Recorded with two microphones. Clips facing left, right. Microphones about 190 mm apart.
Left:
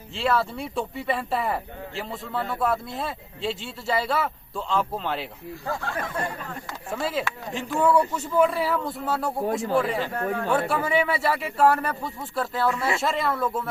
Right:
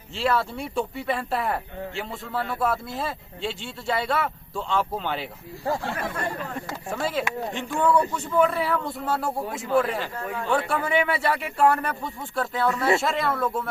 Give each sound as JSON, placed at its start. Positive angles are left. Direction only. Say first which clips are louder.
{"t": 0.2, "sound": "speech", "louder": "even", "side_deg": 0}
{"t": 5.6, "sound": "speech", "louder": "right 3 dB", "side_deg": -30}
{"t": 6.9, "sound": "speech", "louder": "right 1 dB", "side_deg": 0}
{"t": 10.1, "sound": "speech", "louder": "left 4 dB", "side_deg": 60}
{"t": 10.7, "sound": "speech", "louder": "even", "side_deg": 0}